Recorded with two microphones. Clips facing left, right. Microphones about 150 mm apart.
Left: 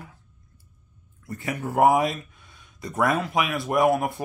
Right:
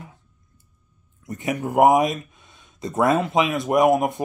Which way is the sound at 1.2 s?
20° right (ahead or behind).